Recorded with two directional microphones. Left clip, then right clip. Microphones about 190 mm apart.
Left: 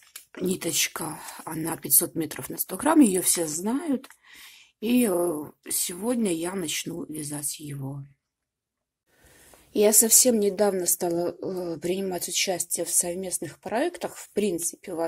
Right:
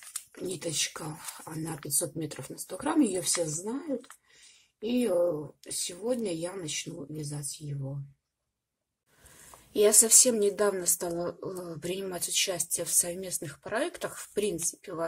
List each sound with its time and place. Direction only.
0.3 s speech: 50° left (ahead or behind)
9.7 s a woman's voice: 20° left (ahead or behind)